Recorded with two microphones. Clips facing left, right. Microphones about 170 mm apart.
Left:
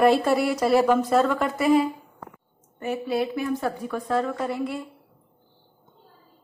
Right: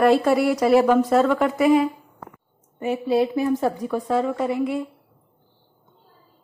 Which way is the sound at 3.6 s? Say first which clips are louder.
Right 5 dB; 20° right (ahead or behind).